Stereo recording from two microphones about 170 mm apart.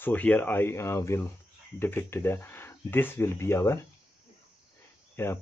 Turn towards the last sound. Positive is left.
turn(degrees=15)  # may be behind; listen again after turning